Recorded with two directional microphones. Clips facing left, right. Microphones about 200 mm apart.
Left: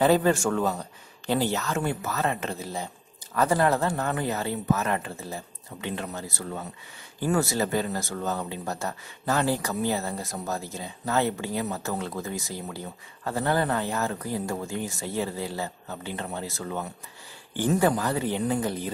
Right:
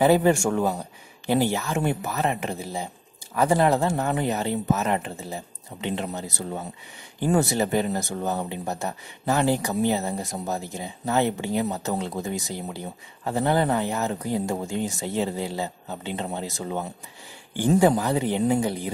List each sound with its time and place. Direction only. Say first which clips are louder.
0.0 s speech: right 2 dB; 15° right (ahead or behind)